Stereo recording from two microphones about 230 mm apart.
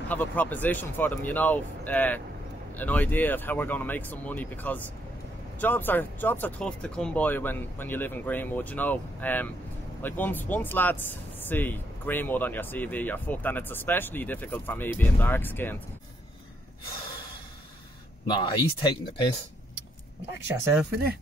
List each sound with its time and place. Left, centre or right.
0.1 s speech: centre
18.2 s speech: centre